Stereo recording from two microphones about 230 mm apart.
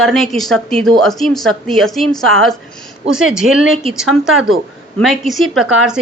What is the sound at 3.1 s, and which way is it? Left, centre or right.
Speech, right.